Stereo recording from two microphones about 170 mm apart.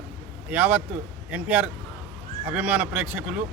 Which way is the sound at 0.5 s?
10° right (ahead or behind).